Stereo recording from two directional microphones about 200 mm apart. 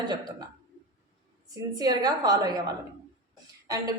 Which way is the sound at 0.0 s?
20° right (ahead or behind).